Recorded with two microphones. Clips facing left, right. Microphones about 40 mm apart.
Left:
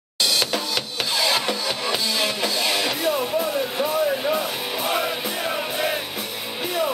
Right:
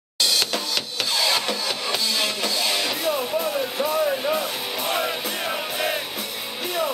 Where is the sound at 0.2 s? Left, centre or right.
Centre.